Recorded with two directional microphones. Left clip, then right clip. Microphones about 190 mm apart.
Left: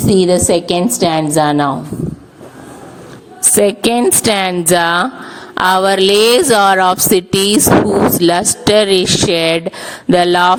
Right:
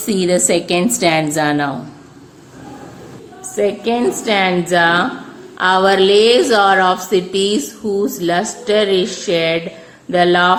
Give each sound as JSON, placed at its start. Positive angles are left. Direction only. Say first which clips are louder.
{"t": 0.0, "sound": "a woman's voice", "louder": "left 5 dB", "side_deg": 15}
{"t": 3.5, "sound": "a woman's voice", "louder": "left 4 dB", "side_deg": 70}